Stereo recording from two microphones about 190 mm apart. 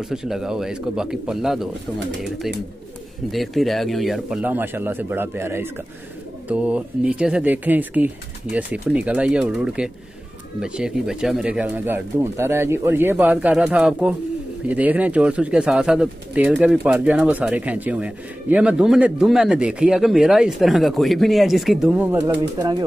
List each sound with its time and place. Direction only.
0.1 s speech: 5° right (ahead or behind)
22.6 s speech: 20° right (ahead or behind)